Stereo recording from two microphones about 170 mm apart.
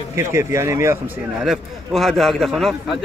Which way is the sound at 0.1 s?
15° right (ahead or behind).